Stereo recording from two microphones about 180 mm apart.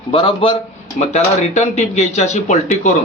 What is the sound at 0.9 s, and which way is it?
Speech, 40° left (ahead or behind).